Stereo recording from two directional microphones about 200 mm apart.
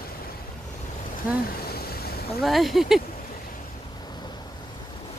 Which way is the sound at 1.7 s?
50° left (ahead or behind).